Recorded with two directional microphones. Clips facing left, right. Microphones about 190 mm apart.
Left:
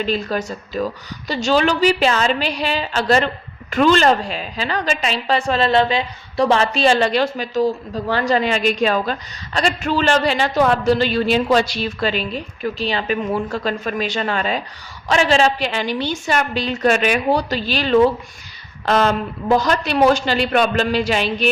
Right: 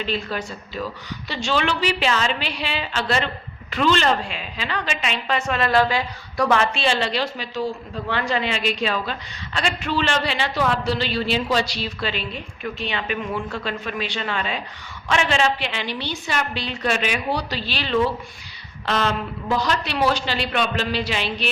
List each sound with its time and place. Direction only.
0.0 s a woman's voice: 40° left (ahead or behind)